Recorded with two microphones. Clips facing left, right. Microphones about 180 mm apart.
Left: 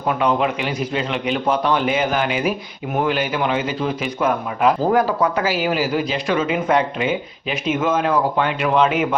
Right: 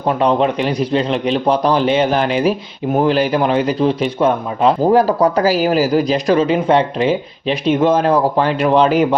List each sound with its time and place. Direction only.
0.0 s a man's voice: 35° right (ahead or behind)